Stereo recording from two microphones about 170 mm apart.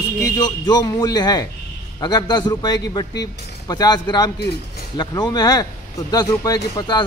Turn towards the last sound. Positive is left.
turn(degrees=25)  # may be behind; listen again after turning